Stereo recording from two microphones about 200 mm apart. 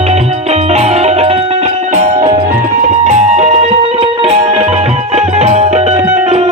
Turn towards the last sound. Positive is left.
turn(degrees=-35)  # may be behind; listen again after turning